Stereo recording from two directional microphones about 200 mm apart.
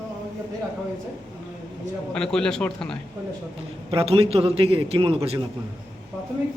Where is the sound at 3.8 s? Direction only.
30° right (ahead or behind).